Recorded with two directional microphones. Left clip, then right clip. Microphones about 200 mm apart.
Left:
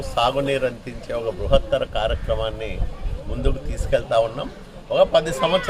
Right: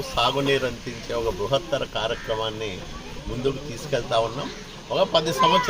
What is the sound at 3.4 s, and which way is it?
A man's voice, 30° left (ahead or behind).